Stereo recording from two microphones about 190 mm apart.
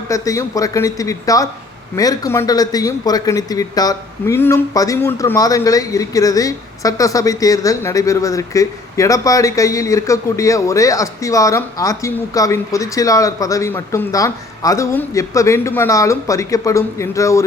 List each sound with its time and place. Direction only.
0.1 s speech: 15° left (ahead or behind)